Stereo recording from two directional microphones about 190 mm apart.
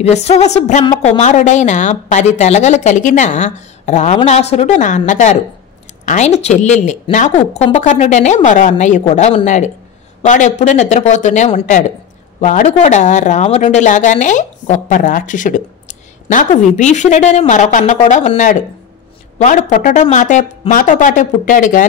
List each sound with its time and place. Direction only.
0.0 s speech: 35° left (ahead or behind)